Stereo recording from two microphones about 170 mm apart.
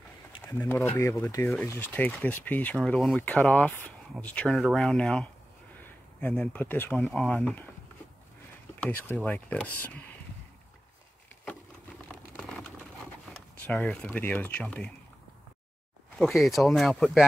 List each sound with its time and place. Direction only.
0.4 s speech: 15° left (ahead or behind)
7.0 s speech: centre (ahead or behind)
8.7 s speech: 10° left (ahead or behind)
12.1 s a sound: 5° left (ahead or behind)
13.7 s speech: 5° left (ahead or behind)
16.2 s speech: centre (ahead or behind)